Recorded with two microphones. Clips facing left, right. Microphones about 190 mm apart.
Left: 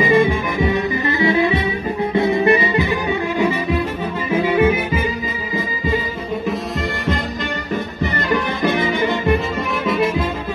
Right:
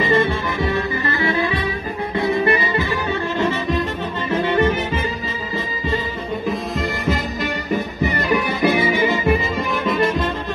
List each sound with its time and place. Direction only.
0.0 s music: 10° left (ahead or behind)
6.4 s music: centre (ahead or behind)